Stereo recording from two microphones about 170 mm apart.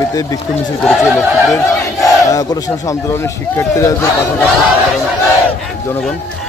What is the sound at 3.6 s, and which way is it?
Speech, 15° left (ahead or behind).